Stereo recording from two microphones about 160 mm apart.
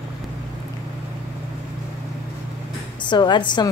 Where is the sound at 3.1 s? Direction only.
30° left (ahead or behind).